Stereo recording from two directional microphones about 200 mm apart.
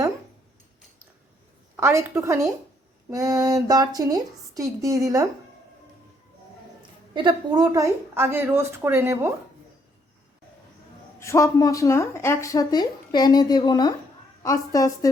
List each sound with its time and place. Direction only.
1.7 s speech: 15° right (ahead or behind)
7.1 s speech: 25° right (ahead or behind)
11.2 s speech: 15° left (ahead or behind)